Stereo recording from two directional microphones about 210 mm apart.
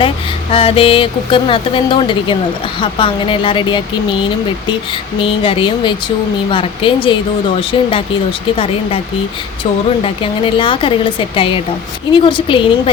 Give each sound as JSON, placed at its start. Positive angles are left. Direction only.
{"t": 0.5, "sound": "speech", "side_deg": 25}
{"t": 5.2, "sound": "speech", "side_deg": 25}
{"t": 10.0, "sound": "speech", "side_deg": 25}